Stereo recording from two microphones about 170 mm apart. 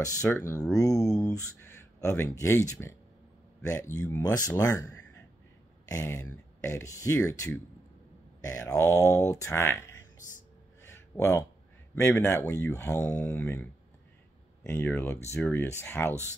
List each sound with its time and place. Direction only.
0.0 s speech: 15° left (ahead or behind)
10.8 s a sound: 15° left (ahead or behind)
11.9 s speech: 15° left (ahead or behind)